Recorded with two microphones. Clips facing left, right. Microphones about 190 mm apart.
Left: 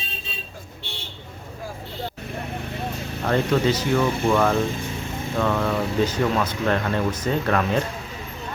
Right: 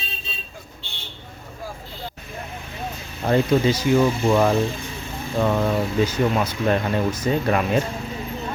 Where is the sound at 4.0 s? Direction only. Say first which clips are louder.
Right 2 dB; 25° right (ahead or behind).